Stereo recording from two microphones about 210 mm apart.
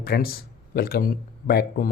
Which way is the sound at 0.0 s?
45° left (ahead or behind).